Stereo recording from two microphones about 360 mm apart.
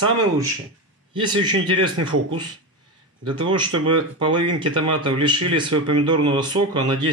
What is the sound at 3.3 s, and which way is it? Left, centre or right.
Speech, centre.